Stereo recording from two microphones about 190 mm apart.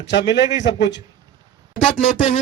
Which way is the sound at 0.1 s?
65° left (ahead or behind).